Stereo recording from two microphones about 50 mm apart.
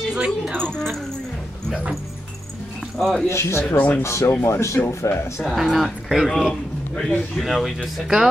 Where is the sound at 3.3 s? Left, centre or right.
Left.